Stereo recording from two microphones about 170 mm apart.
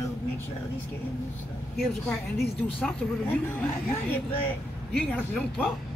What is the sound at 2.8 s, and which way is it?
Speech, 10° left (ahead or behind).